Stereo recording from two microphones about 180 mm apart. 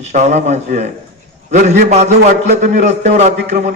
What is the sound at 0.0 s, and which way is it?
A man's voice, 40° right (ahead or behind).